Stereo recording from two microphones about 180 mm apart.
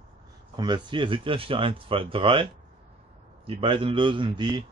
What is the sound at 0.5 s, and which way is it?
Speech, 25° right (ahead or behind).